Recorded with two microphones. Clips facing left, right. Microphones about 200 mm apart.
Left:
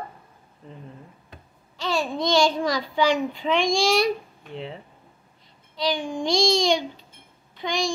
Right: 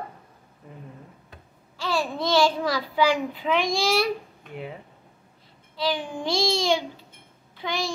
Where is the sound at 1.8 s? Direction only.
20° left (ahead or behind).